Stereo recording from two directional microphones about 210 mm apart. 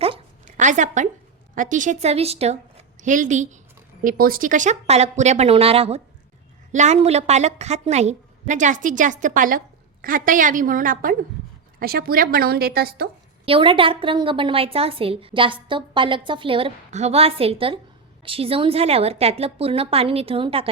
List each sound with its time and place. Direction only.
0.0 s a sound: 30° right (ahead or behind)
1.5 s a woman's voice: 40° right (ahead or behind)
13.4 s a woman's voice: 25° right (ahead or behind)